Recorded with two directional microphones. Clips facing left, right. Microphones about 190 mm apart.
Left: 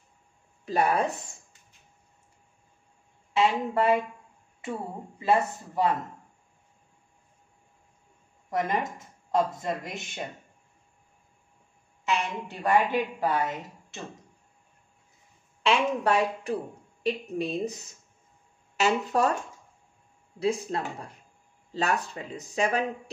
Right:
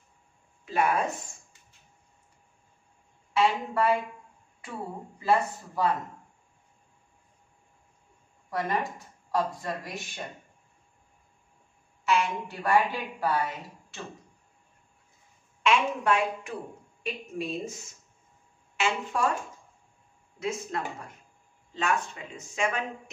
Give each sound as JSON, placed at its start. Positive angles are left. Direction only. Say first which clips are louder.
{"t": 0.7, "sound": "speech", "louder": "left 1 dB", "side_deg": 35}
{"t": 3.3, "sound": "a woman's voice", "louder": "left 1 dB", "side_deg": 20}
{"t": 5.2, "sound": "a woman's voice", "louder": "left 1 dB", "side_deg": 20}
{"t": 8.5, "sound": "a woman's voice", "louder": "left 2 dB", "side_deg": 20}
{"t": 12.0, "sound": "a woman's voice", "louder": "right 3 dB", "side_deg": 20}
{"t": 15.6, "sound": "speech", "louder": "left 1 dB", "side_deg": 35}
{"t": 18.8, "sound": "speech", "louder": "left 4 dB", "side_deg": 40}
{"t": 20.3, "sound": "speech", "louder": "left 5 dB", "side_deg": 35}